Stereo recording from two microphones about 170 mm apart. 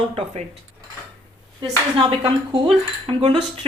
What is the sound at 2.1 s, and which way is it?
A woman's voice, 30° right (ahead or behind).